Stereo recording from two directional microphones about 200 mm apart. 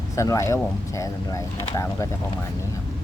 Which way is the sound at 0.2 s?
15° left (ahead or behind).